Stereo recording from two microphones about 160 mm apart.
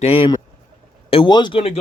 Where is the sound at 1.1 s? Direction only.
30° left (ahead or behind).